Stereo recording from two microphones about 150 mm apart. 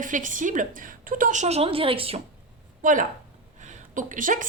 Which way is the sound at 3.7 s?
60° right (ahead or behind).